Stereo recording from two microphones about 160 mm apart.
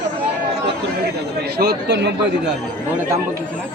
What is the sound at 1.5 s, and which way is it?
Speech, 85° right.